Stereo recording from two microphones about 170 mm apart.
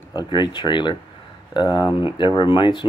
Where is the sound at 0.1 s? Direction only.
25° left (ahead or behind).